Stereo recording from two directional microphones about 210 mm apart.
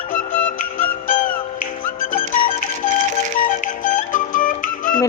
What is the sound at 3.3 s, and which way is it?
Music, 40° left (ahead or behind).